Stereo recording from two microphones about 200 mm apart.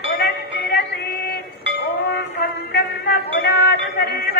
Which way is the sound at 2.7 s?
50° left (ahead or behind).